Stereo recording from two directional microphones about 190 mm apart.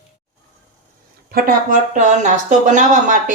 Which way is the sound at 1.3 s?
50° right (ahead or behind).